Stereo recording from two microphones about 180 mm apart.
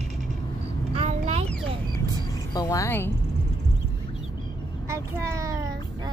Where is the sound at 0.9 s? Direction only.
35° right (ahead or behind).